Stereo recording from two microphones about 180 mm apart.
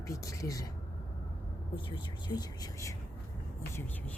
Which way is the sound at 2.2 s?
20° left (ahead or behind).